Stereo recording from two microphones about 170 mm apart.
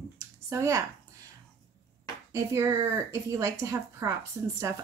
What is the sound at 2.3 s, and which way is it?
Speech, 15° right (ahead or behind).